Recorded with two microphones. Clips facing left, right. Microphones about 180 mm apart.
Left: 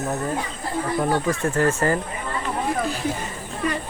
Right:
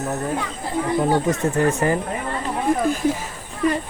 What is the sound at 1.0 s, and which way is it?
Speech, 20° right (ahead or behind).